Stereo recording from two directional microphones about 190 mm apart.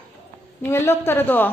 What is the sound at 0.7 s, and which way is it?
Speech, 10° left (ahead or behind).